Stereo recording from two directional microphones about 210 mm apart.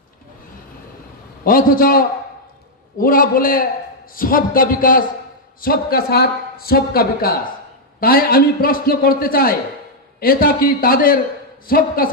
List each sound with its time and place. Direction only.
1.4 s a man's voice: 45° left (ahead or behind)